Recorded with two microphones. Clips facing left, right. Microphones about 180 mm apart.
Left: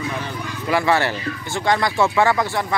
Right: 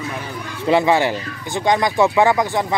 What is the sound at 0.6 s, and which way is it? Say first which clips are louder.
Speech: right 4 dB; 20° right (ahead or behind).